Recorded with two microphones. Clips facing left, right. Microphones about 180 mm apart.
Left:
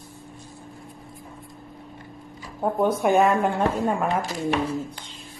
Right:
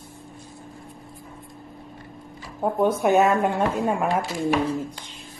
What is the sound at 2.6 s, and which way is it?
Speech, centre (ahead or behind).